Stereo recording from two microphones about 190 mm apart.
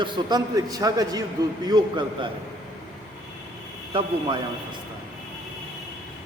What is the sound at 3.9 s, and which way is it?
Speech, 30° right (ahead or behind).